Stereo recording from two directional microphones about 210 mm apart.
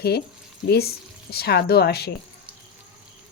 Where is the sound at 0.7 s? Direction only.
50° left (ahead or behind).